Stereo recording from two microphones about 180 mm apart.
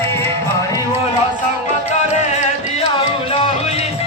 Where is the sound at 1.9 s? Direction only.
40° left (ahead or behind).